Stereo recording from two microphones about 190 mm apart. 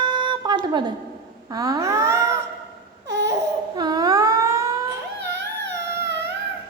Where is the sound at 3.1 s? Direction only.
65° right (ahead or behind).